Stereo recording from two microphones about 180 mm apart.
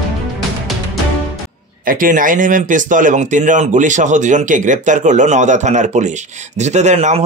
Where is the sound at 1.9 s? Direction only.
50° right (ahead or behind).